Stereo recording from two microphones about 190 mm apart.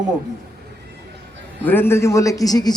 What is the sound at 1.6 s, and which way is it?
A man's voice, 10° left (ahead or behind).